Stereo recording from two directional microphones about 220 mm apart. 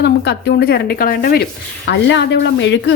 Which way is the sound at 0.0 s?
50° left (ahead or behind).